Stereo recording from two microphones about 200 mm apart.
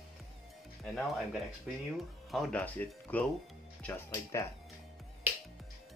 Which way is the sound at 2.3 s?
5° left (ahead or behind).